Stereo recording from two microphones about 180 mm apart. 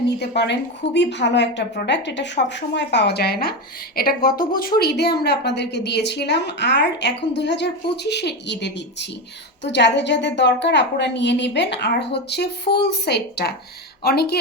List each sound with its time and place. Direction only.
0.2 s a woman's voice: 75° left (ahead or behind)